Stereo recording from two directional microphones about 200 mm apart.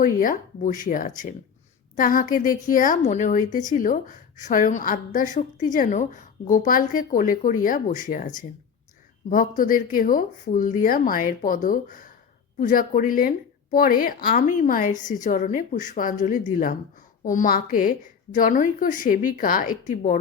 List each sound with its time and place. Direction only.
0.0 s a woman's voice: 40° left (ahead or behind)
9.3 s a woman's voice: 45° left (ahead or behind)